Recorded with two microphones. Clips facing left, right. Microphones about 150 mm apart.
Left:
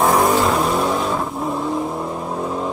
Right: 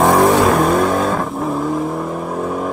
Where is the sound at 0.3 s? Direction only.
60° right (ahead or behind).